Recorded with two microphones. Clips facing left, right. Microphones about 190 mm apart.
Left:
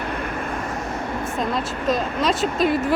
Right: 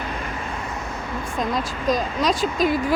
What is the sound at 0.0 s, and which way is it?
Vehicle, 60° left (ahead or behind).